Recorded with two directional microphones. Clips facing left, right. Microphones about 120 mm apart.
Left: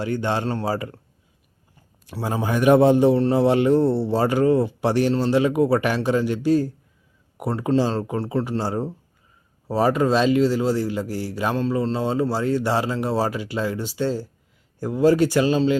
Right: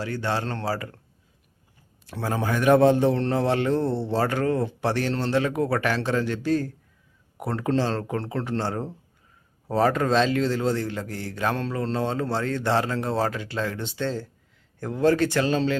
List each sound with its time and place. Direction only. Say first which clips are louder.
0.0 s a man's voice: left 4 dB; 20° left (ahead or behind)
2.0 s a man's voice: left 2 dB; 15° left (ahead or behind)